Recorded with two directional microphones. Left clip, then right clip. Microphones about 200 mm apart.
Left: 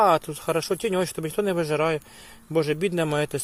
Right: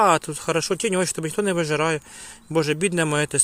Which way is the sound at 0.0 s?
20° right (ahead or behind).